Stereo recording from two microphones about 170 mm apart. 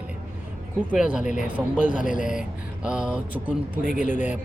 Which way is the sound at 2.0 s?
50° left (ahead or behind).